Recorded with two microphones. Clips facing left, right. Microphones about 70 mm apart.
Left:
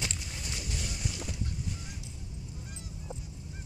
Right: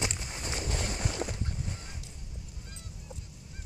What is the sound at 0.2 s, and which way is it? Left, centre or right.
Boat, right.